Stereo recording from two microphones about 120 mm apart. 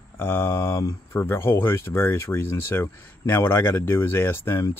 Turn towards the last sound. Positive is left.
turn(degrees=20)  # may be behind; listen again after turning